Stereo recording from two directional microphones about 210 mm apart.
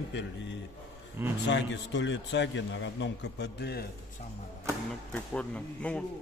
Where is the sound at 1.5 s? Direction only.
60° left (ahead or behind).